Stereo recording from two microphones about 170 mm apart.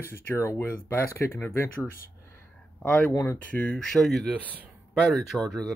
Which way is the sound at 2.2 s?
10° left (ahead or behind).